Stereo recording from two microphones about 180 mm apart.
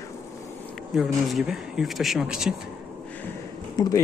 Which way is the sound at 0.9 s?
Centre (ahead or behind).